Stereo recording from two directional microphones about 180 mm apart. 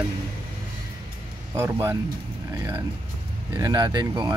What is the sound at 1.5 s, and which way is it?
Speech, 15° right (ahead or behind).